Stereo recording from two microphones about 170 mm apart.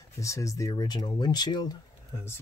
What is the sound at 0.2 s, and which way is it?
Speech, 20° left (ahead or behind).